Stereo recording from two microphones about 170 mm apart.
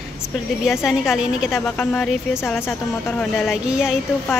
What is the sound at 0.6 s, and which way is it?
Speech, centre (ahead or behind).